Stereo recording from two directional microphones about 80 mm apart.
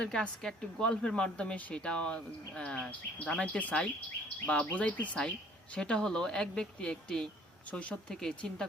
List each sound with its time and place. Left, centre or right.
0.0 s speech: centre